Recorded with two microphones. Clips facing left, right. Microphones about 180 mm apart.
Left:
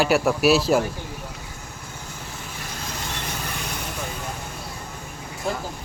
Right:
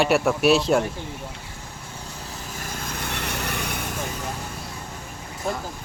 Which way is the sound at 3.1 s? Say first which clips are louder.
Right 2 dB; 65° right (ahead or behind).